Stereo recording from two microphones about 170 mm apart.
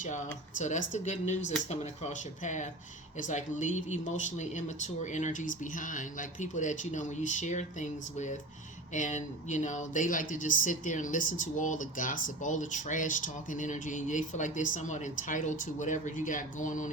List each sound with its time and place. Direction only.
0.6 s speech: 45° left (ahead or behind)